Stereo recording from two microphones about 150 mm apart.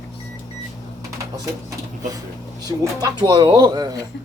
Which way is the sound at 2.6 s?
25° right (ahead or behind).